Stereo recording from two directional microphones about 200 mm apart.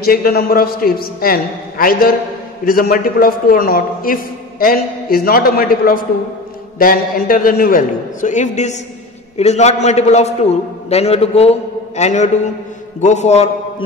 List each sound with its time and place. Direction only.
0.0 s a man's voice: 50° left (ahead or behind); by 13.8 s 30° left (ahead or behind)